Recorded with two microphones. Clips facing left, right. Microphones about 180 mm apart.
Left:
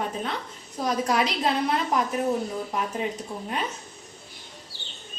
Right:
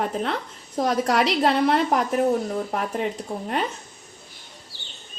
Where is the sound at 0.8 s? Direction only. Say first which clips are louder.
Right 3 dB; 75° right (ahead or behind).